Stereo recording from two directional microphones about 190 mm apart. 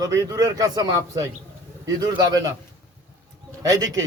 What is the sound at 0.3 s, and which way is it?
A man's voice, 20° right (ahead or behind).